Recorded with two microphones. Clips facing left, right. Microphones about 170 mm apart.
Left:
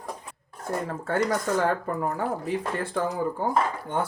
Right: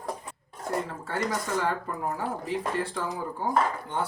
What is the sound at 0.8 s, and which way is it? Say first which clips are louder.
Speech: left 5 dB; 50° left (ahead or behind).